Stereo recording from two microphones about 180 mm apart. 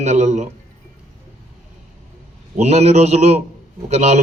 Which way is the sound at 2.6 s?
35° right (ahead or behind).